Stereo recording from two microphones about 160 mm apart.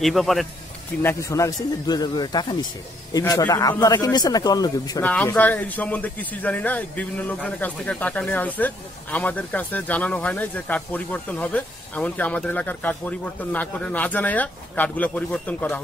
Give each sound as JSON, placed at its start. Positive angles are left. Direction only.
{"t": 0.0, "sound": "speech", "side_deg": 0}
{"t": 1.0, "sound": "a man's voice", "side_deg": 20}
{"t": 5.0, "sound": "a man's voice", "side_deg": 10}